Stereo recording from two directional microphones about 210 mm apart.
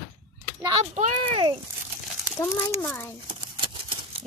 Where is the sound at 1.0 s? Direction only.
30° right (ahead or behind).